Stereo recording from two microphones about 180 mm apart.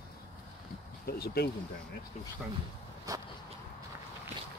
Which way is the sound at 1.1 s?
60° left (ahead or behind).